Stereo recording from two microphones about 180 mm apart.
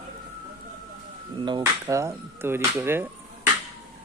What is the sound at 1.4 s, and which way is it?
Speech, 25° right (ahead or behind).